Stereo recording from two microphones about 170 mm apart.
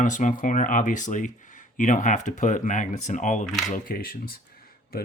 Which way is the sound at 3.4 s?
Centre (ahead or behind).